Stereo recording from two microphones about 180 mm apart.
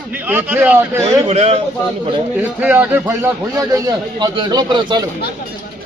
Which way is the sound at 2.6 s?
10° right (ahead or behind).